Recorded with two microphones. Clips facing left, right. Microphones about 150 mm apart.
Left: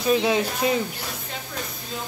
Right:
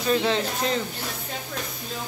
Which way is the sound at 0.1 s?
10° left (ahead or behind).